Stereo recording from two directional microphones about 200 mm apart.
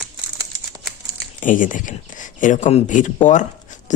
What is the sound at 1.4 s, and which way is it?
Speech, 40° left (ahead or behind).